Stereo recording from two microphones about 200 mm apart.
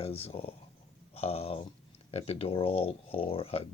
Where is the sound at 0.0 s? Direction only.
30° left (ahead or behind).